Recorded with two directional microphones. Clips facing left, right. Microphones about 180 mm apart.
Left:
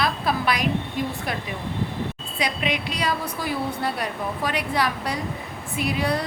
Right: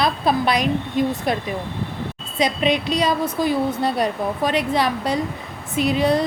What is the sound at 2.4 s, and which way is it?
A woman's voice, 25° right (ahead or behind).